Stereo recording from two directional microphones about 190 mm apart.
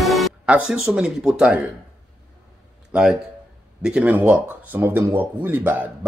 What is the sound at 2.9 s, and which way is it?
Speech, 5° right (ahead or behind).